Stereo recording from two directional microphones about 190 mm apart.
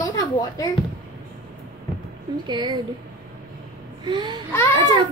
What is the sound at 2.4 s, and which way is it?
Speech, 25° right (ahead or behind).